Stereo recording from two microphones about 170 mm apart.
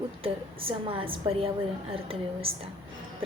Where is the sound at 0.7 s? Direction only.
30° right (ahead or behind).